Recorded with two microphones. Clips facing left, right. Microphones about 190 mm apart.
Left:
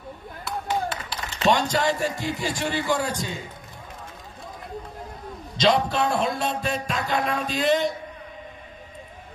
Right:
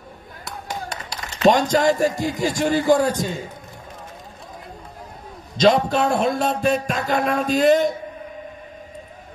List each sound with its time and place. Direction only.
0.7 s speech: 45° right (ahead or behind)
5.6 s a man's voice: 45° right (ahead or behind)